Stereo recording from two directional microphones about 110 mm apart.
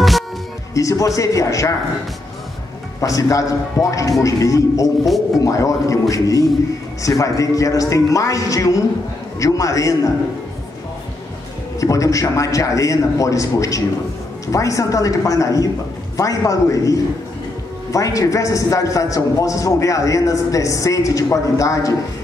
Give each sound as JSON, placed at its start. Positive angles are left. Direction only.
{"t": 0.7, "sound": "a man's voice", "side_deg": 30}
{"t": 3.0, "sound": "a man's voice", "side_deg": 30}
{"t": 11.8, "sound": "a man's voice", "side_deg": 30}